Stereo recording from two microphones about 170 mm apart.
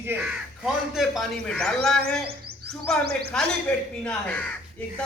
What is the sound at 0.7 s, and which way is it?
Speech, centre (ahead or behind).